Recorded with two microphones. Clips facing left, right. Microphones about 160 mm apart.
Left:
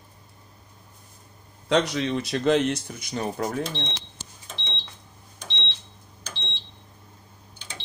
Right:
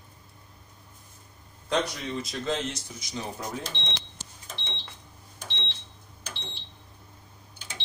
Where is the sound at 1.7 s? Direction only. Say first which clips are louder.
Left 6 dB; 80° left; by 3.5 s 60° left (ahead or behind).